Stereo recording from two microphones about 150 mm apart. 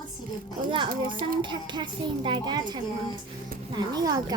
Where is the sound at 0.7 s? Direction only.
35° right (ahead or behind).